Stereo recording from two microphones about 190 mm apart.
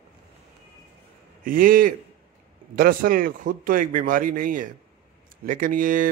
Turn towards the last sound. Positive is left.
turn(degrees=-45)  # may be behind; listen again after turning